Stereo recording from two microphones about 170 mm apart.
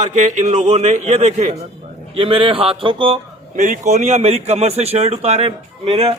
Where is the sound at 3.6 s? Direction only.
45° right (ahead or behind).